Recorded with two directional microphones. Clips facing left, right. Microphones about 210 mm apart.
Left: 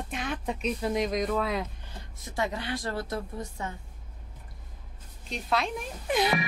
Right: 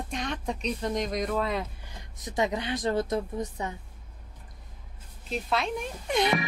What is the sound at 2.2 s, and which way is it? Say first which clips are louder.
A woman's voice: right 3 dB; 20° right (ahead or behind).